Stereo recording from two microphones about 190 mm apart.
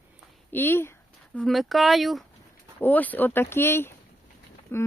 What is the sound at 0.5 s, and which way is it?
Speech, 10° left (ahead or behind).